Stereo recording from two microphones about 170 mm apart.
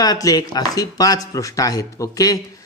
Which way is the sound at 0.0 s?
20° left (ahead or behind).